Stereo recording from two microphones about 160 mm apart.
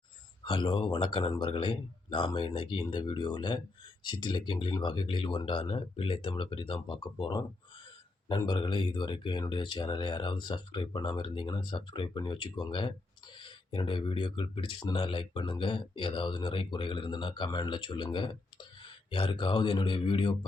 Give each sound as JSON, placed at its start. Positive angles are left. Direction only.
{"t": 0.4, "sound": "speech", "side_deg": 30}